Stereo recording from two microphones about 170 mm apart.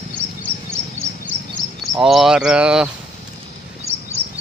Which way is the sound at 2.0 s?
Centre (ahead or behind).